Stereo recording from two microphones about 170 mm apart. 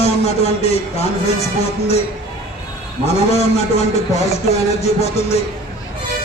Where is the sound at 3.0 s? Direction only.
40° left (ahead or behind).